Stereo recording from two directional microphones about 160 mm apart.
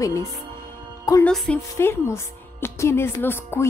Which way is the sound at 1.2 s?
5° left (ahead or behind).